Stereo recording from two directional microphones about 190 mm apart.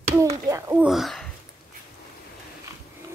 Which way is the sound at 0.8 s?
Centre (ahead or behind).